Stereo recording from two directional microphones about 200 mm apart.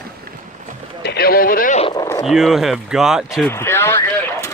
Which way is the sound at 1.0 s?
50° left (ahead or behind).